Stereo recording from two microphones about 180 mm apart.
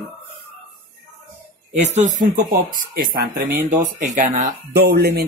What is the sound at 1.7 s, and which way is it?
Speech, 40° right (ahead or behind).